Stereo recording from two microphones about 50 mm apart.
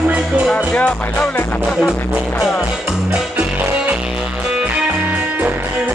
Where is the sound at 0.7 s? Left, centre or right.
Left.